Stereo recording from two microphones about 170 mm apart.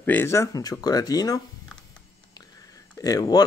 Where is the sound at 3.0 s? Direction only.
20° left (ahead or behind).